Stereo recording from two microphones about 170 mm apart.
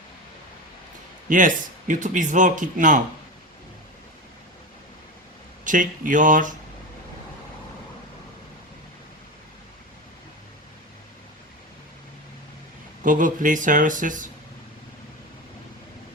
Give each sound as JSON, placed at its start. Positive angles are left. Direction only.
{"t": 1.3, "sound": "speech", "side_deg": -50}
{"t": 5.6, "sound": "speech", "side_deg": -50}
{"t": 13.0, "sound": "speech", "side_deg": -50}